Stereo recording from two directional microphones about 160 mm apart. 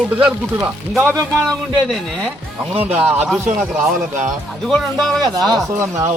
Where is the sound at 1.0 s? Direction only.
15° right (ahead or behind).